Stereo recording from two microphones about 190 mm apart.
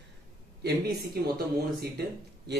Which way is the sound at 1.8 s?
60° right (ahead or behind).